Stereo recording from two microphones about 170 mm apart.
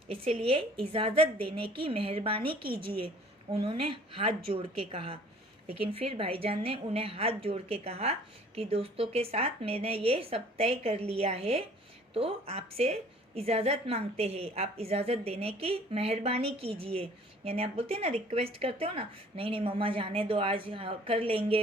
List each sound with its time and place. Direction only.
0.1 s a woman's voice: 35° right (ahead or behind)